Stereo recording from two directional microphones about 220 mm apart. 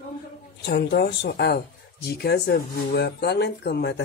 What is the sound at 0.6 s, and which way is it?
Speech, 50° left (ahead or behind).